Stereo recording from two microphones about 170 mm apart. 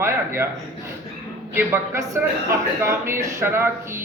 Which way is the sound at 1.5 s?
15° right (ahead or behind).